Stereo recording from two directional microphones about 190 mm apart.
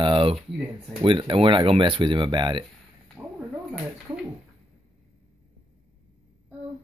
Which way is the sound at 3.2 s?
10° right (ahead or behind).